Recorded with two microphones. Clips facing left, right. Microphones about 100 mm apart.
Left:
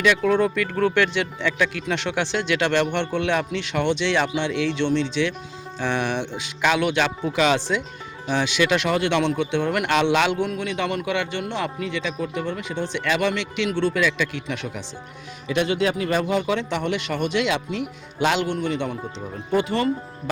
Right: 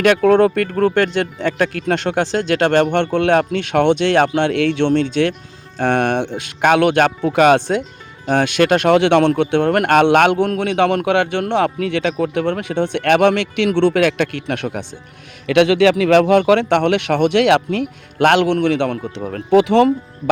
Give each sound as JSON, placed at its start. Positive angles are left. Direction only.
{"t": 0.0, "sound": "speech", "side_deg": -55}
{"t": 8.9, "sound": "speech", "side_deg": -75}
{"t": 9.1, "sound": "a man's voice", "side_deg": -60}
{"t": 15.4, "sound": "speech", "side_deg": -85}